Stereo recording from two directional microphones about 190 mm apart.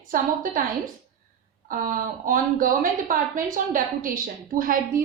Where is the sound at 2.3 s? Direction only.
45° right (ahead or behind).